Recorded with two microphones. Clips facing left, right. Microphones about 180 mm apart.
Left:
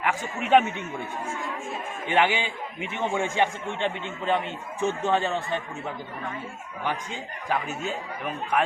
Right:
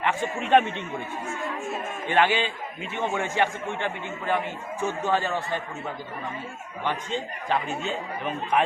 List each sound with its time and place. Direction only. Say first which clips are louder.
0.0 s a man's voice: right 2 dB; 5° left (ahead or behind)
2.0 s a man's voice: right 1 dB; 15° left (ahead or behind)
6.8 s a man's voice: right 2 dB; 10° left (ahead or behind)